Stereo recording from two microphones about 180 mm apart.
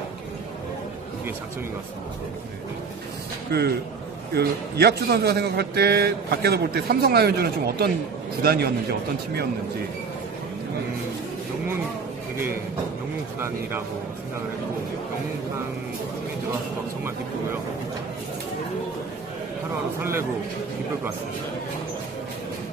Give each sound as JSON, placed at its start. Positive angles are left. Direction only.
{"t": 3.5, "sound": "a man's voice", "side_deg": -60}
{"t": 20.0, "sound": "a man's voice", "side_deg": -15}